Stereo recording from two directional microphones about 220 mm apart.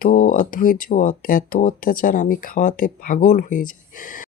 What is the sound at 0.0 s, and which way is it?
Speech, 35° left (ahead or behind).